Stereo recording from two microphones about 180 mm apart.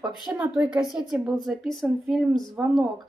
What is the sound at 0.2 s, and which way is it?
A woman's voice, 5° right (ahead or behind).